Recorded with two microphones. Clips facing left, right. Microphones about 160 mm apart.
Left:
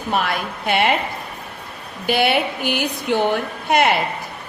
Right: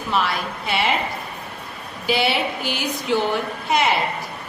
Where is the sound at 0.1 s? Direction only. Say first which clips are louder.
Left 1 dB; 55° left (ahead or behind).